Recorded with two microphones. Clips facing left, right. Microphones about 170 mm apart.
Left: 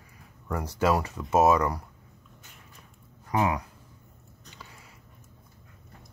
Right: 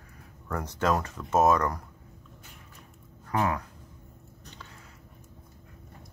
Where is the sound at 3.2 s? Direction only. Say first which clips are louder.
Left 2 dB; 15° left (ahead or behind).